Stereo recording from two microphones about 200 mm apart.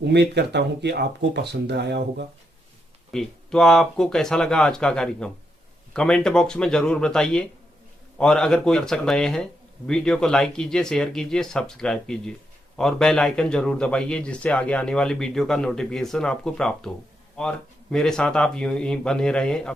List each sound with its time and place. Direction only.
0.0 s speech: 55° right (ahead or behind)
3.1 s a man's voice: 5° left (ahead or behind)
17.9 s a man's voice: 5° left (ahead or behind)